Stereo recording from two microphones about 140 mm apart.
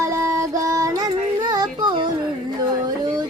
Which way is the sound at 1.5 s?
35° right (ahead or behind).